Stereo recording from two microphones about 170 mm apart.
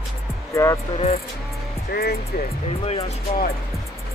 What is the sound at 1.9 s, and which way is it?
Speech, 65° left (ahead or behind).